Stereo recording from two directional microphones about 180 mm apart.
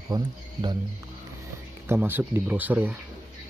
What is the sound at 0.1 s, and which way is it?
Speech, 25° right (ahead or behind).